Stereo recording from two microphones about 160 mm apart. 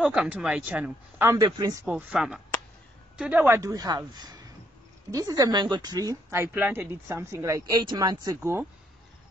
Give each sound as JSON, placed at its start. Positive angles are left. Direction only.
{"t": 0.0, "sound": "speech", "side_deg": -5}
{"t": 1.9, "sound": "speech", "side_deg": -10}